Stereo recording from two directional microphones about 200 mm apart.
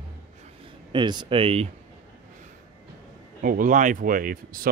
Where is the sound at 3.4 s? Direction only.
45° right (ahead or behind).